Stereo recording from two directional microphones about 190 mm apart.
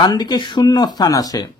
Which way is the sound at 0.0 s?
20° left (ahead or behind).